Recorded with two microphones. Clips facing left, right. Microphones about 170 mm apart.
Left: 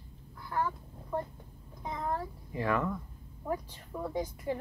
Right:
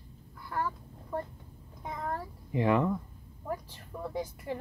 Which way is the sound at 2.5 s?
20° right (ahead or behind).